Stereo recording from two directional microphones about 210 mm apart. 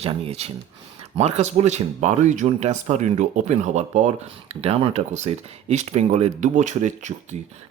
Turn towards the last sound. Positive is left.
turn(degrees=-35)  # may be behind; listen again after turning